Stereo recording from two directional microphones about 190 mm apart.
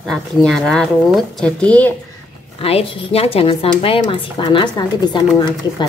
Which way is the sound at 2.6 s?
30° left (ahead or behind).